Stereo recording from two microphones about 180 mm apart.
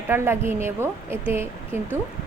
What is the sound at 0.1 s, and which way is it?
A woman's voice, 15° right (ahead or behind).